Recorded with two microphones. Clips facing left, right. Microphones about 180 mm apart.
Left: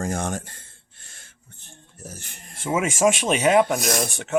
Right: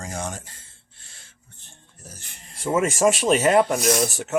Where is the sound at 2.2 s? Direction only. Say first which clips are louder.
Left 4 dB; 50° left (ahead or behind).